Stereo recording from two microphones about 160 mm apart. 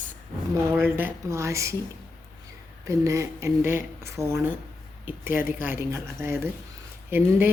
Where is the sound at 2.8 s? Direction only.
20° right (ahead or behind).